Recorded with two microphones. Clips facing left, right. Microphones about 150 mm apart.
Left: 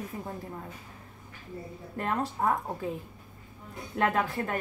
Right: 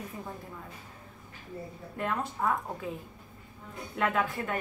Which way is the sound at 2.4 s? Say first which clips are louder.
Left 2 dB; 40° left (ahead or behind).